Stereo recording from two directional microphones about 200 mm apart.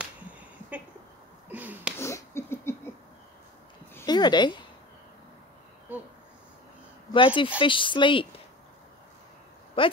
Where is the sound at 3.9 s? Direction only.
20° left (ahead or behind).